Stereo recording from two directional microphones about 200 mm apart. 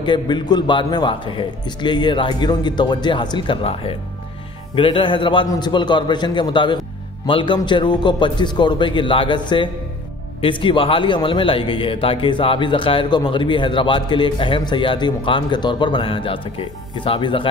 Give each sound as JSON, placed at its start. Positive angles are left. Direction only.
{"t": 0.0, "sound": "a man's voice", "side_deg": 20}